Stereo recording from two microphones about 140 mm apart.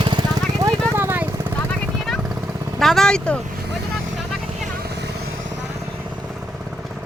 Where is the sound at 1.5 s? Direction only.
10° left (ahead or behind).